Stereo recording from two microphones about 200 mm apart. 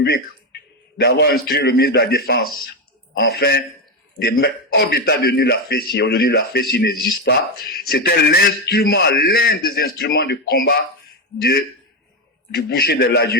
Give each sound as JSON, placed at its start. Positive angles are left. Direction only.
{"t": 0.0, "sound": "a man's voice", "side_deg": 55}